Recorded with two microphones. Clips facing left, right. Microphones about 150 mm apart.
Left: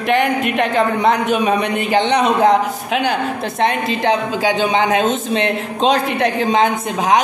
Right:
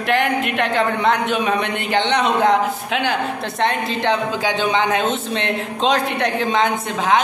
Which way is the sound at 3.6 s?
15° left (ahead or behind).